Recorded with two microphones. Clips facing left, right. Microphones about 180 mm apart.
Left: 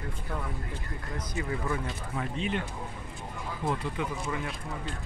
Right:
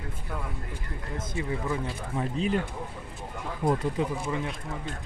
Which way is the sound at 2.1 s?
40° right (ahead or behind).